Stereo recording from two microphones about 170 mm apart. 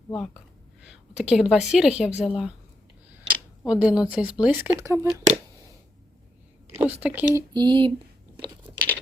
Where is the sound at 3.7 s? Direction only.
5° right (ahead or behind).